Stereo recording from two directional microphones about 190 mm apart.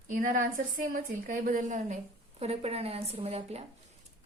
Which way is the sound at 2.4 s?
30° right (ahead or behind).